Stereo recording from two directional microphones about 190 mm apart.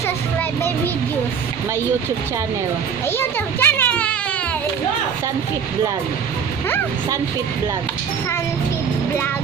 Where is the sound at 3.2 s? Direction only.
10° left (ahead or behind).